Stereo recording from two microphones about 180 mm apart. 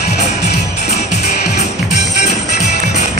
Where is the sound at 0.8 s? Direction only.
40° left (ahead or behind).